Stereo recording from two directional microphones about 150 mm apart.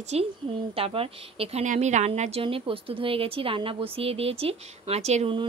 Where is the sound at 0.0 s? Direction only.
45° right (ahead or behind).